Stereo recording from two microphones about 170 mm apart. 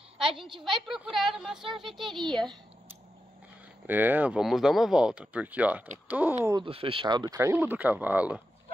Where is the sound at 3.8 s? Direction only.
10° right (ahead or behind).